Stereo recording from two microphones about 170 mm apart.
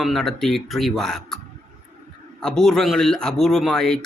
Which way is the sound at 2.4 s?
5° left (ahead or behind).